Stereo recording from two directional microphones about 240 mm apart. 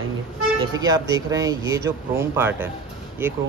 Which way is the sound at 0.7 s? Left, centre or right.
Centre.